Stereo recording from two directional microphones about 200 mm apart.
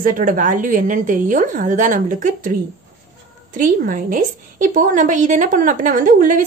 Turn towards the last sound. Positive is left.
turn(degrees=-40)  # may be behind; listen again after turning